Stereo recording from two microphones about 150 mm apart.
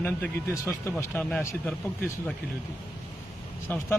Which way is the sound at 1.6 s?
5° left (ahead or behind).